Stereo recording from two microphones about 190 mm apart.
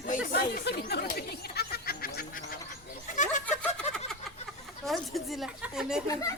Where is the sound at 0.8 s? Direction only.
55° left (ahead or behind).